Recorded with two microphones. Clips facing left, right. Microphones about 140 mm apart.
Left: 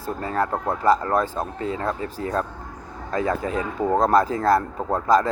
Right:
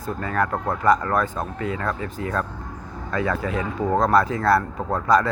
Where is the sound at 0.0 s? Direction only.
30° left (ahead or behind).